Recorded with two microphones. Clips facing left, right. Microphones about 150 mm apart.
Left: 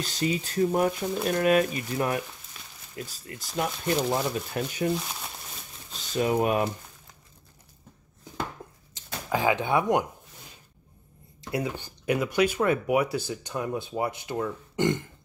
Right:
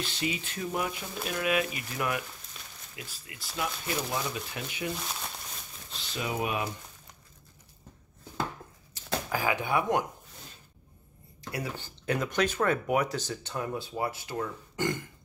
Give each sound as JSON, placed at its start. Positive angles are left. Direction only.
{"t": 0.0, "sound": "speech", "side_deg": 40}
{"t": 4.9, "sound": "speech", "side_deg": 0}
{"t": 5.9, "sound": "speech", "side_deg": 45}
{"t": 8.9, "sound": "speech", "side_deg": 20}
{"t": 11.5, "sound": "speech", "side_deg": 15}